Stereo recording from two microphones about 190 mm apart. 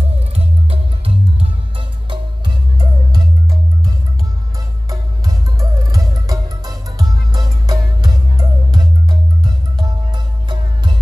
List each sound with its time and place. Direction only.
0.0 s music: 30° right (ahead or behind)
4.8 s music: 20° right (ahead or behind)